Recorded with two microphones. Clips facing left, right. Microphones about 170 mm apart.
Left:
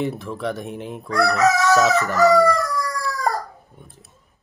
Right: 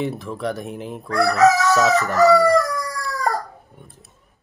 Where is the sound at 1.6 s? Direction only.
Centre (ahead or behind).